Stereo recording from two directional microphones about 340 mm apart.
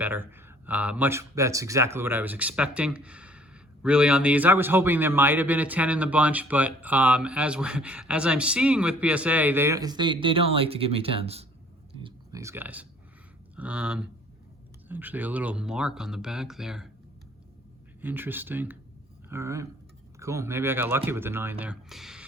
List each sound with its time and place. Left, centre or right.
0.0 s a man's voice: centre
12.0 s a sound: centre
13.6 s a man's voice: centre
18.0 s a man's voice: centre